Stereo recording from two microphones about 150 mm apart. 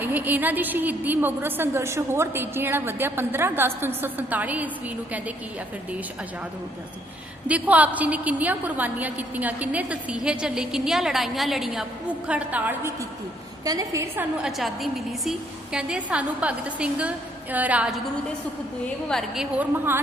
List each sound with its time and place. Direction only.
0.0 s a woman's voice: 10° right (ahead or behind)
7.4 s a woman's voice: 10° right (ahead or behind)
13.7 s a woman's voice: 20° right (ahead or behind)
14.4 s a woman's voice: centre (ahead or behind)
19.0 s a woman's voice: centre (ahead or behind)